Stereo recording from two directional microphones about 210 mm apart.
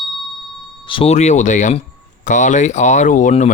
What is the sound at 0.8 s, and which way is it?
Speech, 25° left (ahead or behind).